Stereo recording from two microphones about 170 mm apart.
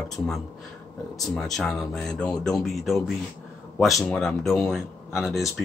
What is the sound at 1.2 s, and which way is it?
Speech, centre (ahead or behind).